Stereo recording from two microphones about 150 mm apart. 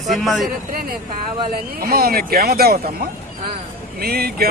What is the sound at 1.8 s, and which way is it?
Speech, 90° right.